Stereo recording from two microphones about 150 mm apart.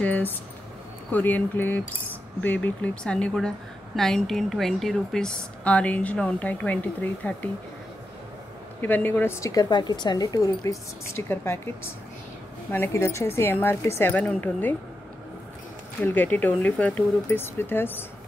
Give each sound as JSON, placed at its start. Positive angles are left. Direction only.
{"t": 0.0, "sound": "a woman's voice", "side_deg": 10}
{"t": 8.8, "sound": "a woman's voice", "side_deg": 10}
{"t": 16.0, "sound": "a woman's voice", "side_deg": 10}